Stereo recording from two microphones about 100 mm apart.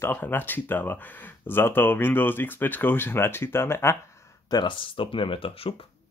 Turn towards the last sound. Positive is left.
turn(degrees=65)  # may be behind; listen again after turning